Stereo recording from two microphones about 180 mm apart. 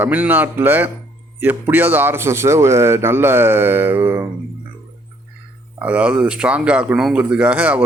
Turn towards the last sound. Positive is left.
turn(degrees=-10)  # may be behind; listen again after turning